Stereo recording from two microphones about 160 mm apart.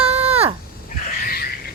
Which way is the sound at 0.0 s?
40° right (ahead or behind).